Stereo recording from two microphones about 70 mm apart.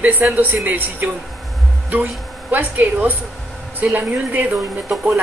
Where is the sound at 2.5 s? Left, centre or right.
Right.